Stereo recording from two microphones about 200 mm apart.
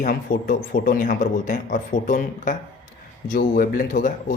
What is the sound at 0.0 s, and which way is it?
Speech, 45° left (ahead or behind).